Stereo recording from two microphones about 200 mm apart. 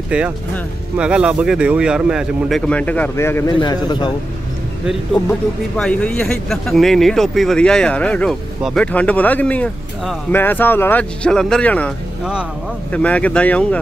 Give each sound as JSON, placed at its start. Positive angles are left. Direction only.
{"t": 0.9, "sound": "a man's voice", "side_deg": -5}
{"t": 4.8, "sound": "speech", "side_deg": 5}
{"t": 12.9, "sound": "speech", "side_deg": 5}